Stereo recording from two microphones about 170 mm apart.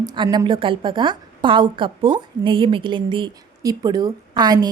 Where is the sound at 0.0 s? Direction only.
25° right (ahead or behind).